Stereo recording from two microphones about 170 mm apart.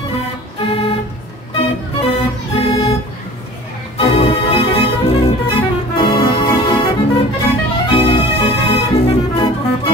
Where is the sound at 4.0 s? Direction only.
35° left (ahead or behind).